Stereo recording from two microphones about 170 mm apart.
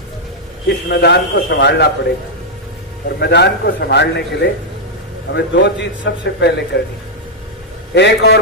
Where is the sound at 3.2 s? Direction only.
75° left (ahead or behind).